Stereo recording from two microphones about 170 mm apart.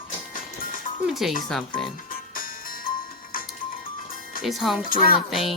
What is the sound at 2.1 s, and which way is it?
Music, 55° left (ahead or behind).